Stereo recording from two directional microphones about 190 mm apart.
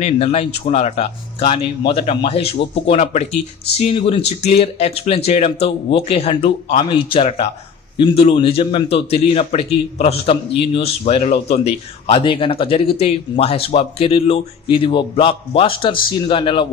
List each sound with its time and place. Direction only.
0.0 s a man's voice: 30° left (ahead or behind)